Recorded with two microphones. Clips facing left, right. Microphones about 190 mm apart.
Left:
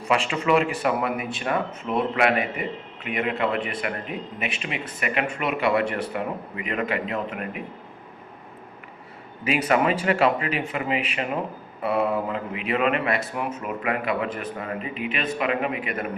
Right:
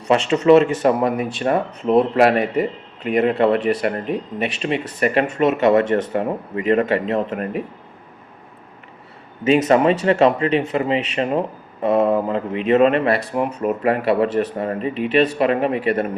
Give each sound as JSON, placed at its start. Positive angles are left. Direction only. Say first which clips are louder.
{"t": 0.1, "sound": "a man's voice", "louder": "right 9 dB", "side_deg": -35}
{"t": 9.4, "sound": "a man's voice", "louder": "right 7 dB", "side_deg": -40}